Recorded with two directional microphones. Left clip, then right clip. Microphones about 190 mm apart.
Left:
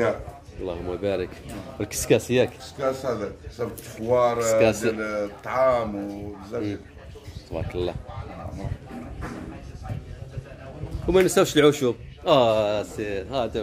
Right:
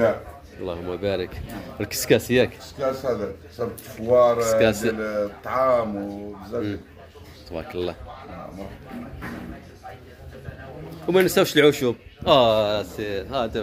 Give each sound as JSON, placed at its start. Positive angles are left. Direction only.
{"t": 0.7, "sound": "speech", "side_deg": 5}
{"t": 2.8, "sound": "speech", "side_deg": -20}
{"t": 4.4, "sound": "a man's voice", "side_deg": 10}
{"t": 4.9, "sound": "speech", "side_deg": -10}
{"t": 7.5, "sound": "a man's voice", "side_deg": 10}
{"t": 11.1, "sound": "a man's voice", "side_deg": 10}